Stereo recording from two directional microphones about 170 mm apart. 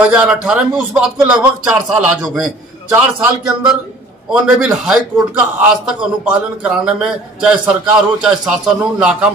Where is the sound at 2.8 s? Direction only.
5° right (ahead or behind).